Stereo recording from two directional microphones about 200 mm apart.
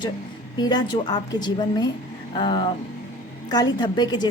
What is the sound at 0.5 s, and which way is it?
A woman's voice, 20° left (ahead or behind).